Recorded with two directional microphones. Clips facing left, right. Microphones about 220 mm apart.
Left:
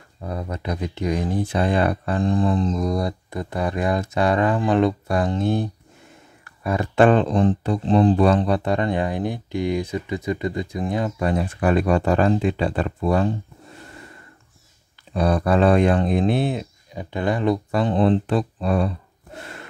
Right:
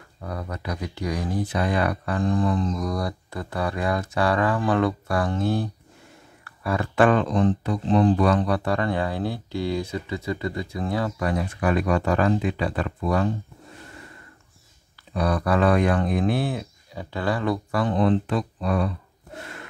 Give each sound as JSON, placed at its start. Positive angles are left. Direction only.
{"t": 0.2, "sound": "speech", "side_deg": 25}
{"t": 15.1, "sound": "speech", "side_deg": 25}